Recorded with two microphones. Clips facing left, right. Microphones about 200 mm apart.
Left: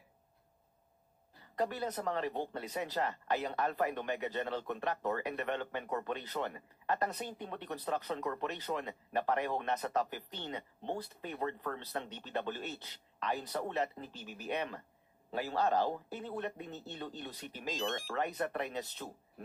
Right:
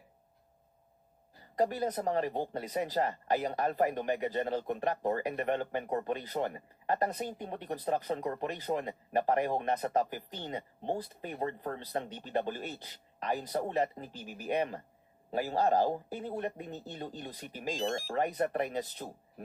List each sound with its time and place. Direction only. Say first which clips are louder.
1.5 s speech: right 5 dB; 45° right (ahead or behind)
14.0 s speech: right 3 dB; 10° right (ahead or behind)
14.5 s speech: right 6 dB; 45° right (ahead or behind)
16.6 s speech: right 3 dB; 10° right (ahead or behind)
17.7 s speech: right 4 dB; 35° right (ahead or behind)